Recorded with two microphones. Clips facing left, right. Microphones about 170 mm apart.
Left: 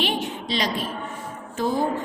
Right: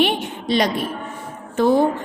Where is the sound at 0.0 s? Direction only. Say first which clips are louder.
Right 6 dB; 60° right (ahead or behind).